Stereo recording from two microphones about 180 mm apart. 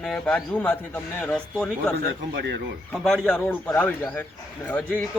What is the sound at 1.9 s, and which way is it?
Speech, 70° right (ahead or behind).